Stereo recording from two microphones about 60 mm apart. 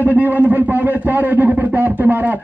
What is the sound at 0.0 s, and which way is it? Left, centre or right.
A man's voice, right.